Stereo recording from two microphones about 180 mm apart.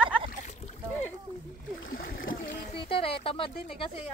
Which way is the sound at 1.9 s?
50° left (ahead or behind).